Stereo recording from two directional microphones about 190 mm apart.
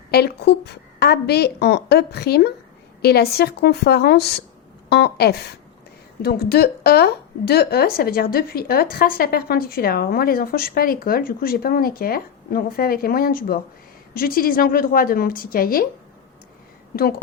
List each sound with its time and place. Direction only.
0.1 s a woman's voice: 55° left (ahead or behind)
16.9 s a woman's voice: 50° left (ahead or behind)